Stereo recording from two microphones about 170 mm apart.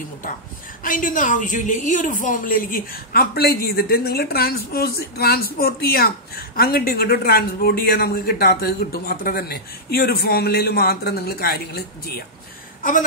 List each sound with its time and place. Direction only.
0.8 s a woman's voice: 50° left (ahead or behind)